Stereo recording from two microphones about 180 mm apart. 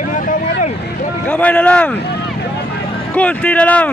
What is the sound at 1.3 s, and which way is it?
Speech, 10° left (ahead or behind).